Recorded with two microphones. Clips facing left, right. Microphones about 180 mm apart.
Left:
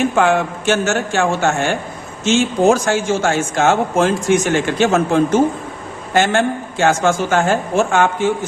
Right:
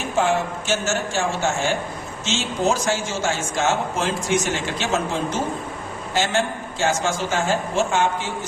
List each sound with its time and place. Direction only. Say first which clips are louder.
0.0 s a man's voice: left 6 dB; 65° left (ahead or behind)